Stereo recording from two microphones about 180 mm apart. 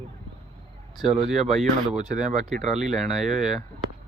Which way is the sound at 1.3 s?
Centre (ahead or behind).